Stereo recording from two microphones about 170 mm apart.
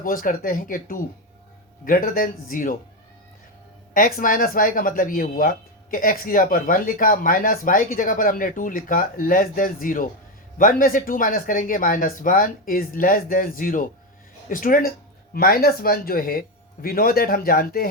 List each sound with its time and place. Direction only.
0.0 s speech: 55° left (ahead or behind)
3.9 s speech: 55° left (ahead or behind)